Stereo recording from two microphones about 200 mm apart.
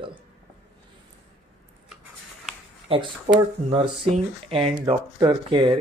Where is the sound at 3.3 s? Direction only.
35° right (ahead or behind).